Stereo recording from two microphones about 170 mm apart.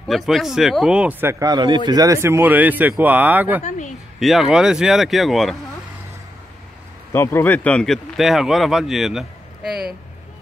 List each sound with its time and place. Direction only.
0.1 s speech: centre (ahead or behind)
1.4 s a man's voice: 25° right (ahead or behind); by 3.6 s 10° right (ahead or behind)
3.6 s speech: 45° left (ahead or behind)
4.2 s speech: centre (ahead or behind)
7.1 s speech: 15° left (ahead or behind); by 9.9 s centre (ahead or behind)